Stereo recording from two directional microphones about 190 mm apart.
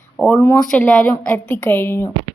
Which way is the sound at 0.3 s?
10° left (ahead or behind).